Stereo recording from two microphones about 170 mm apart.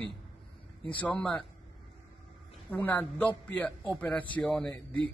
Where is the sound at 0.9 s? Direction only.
10° left (ahead or behind).